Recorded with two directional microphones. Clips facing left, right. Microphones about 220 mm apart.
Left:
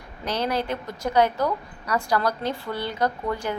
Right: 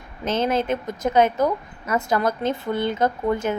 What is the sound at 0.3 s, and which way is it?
A woman's voice, 20° right (ahead or behind).